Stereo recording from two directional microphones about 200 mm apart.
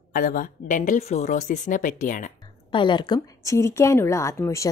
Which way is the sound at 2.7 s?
25° left (ahead or behind).